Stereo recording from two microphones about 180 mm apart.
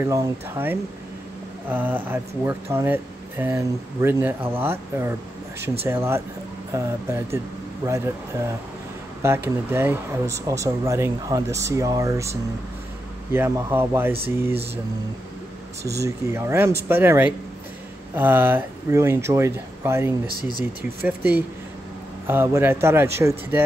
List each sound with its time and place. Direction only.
0.0 s speech: 15° right (ahead or behind)
9.2 s speech: 15° right (ahead or behind)
15.8 s speech: 15° right (ahead or behind)